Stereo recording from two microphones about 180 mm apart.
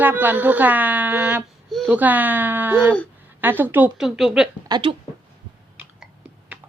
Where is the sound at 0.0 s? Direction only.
10° right (ahead or behind).